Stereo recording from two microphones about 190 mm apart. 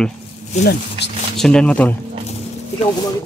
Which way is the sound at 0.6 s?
65° left (ahead or behind).